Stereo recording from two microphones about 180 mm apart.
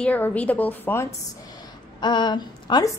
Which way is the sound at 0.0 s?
10° left (ahead or behind).